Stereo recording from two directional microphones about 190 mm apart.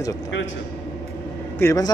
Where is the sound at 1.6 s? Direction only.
15° left (ahead or behind).